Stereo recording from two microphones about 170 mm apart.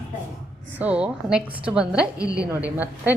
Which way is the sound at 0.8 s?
5° right (ahead or behind).